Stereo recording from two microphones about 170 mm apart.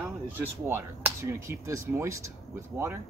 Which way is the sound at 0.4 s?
10° right (ahead or behind).